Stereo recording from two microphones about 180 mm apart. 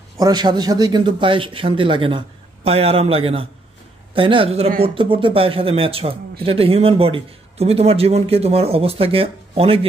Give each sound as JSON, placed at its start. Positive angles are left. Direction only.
{"t": 0.2, "sound": "a man's voice", "side_deg": -25}